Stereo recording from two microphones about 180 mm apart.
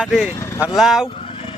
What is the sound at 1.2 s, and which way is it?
Vehicle, 30° left (ahead or behind).